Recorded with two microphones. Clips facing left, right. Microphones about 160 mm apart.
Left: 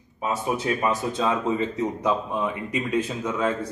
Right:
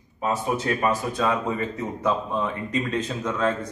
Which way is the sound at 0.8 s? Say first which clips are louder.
Right 1 dB; 20° left (ahead or behind).